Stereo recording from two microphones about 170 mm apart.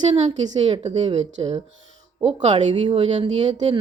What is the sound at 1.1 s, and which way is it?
Speech, 40° right (ahead or behind).